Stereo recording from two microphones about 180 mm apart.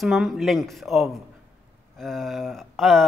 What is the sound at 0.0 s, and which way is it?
A man's voice, centre (ahead or behind).